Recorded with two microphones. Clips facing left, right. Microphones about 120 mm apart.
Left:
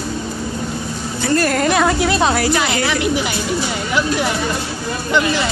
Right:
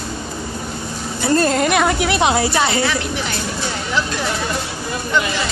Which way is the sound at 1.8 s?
15° right (ahead or behind).